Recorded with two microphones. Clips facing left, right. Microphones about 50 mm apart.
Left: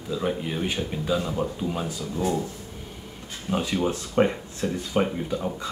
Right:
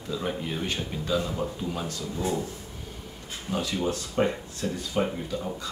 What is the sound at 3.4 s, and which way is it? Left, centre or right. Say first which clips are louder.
Speech: left 3 dB; left.